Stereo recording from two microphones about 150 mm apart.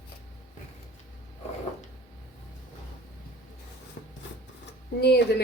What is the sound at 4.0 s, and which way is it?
Rub, 90° left.